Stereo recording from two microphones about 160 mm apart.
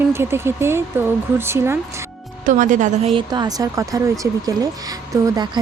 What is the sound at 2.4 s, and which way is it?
Speech, 50° right (ahead or behind).